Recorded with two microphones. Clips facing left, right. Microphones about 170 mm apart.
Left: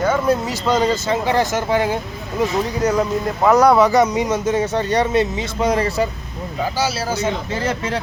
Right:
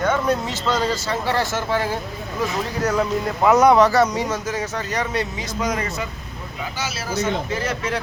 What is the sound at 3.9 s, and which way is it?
Speech, 15° left (ahead or behind).